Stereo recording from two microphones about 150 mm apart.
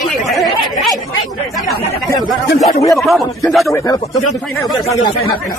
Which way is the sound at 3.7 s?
25° left (ahead or behind).